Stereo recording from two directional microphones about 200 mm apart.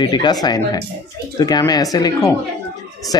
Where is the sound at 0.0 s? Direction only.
20° left (ahead or behind).